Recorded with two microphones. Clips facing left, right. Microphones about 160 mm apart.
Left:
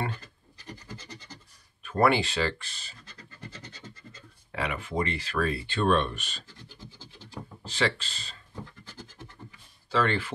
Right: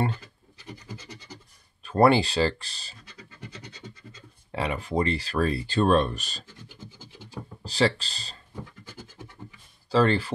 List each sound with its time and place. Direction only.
0.7 s scratch: 10° right (ahead or behind)
1.8 s speech: 30° right (ahead or behind)
3.4 s scratch: 15° right (ahead or behind)
4.5 s speech: 30° right (ahead or behind)
7.6 s speech: 35° right (ahead or behind)
9.8 s speech: 35° right (ahead or behind)